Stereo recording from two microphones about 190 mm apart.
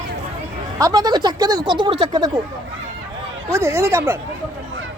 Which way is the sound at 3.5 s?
15° right (ahead or behind).